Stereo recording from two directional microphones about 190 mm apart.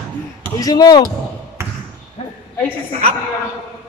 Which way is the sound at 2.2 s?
35° left (ahead or behind).